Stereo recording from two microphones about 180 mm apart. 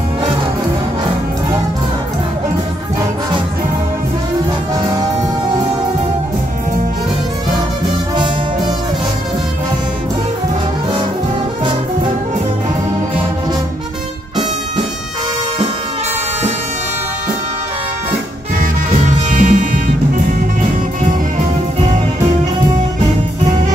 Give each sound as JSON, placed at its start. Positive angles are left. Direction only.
{"t": 19.3, "sound": "music", "side_deg": -45}